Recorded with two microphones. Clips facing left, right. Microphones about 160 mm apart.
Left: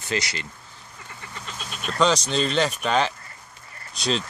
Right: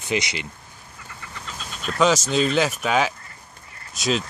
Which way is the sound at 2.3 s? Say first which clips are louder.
Right 2 dB; 5° right (ahead or behind).